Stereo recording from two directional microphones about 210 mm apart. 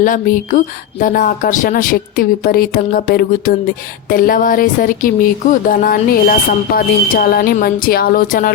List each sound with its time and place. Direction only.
0.0 s speech: 40° left (ahead or behind)